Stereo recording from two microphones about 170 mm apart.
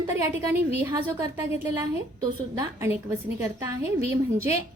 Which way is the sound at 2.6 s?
15° right (ahead or behind).